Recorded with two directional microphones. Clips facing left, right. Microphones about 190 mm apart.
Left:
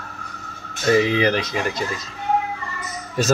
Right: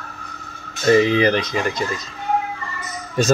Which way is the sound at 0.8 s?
5° left (ahead or behind).